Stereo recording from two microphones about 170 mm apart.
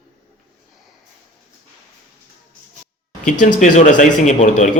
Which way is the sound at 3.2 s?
45° left (ahead or behind).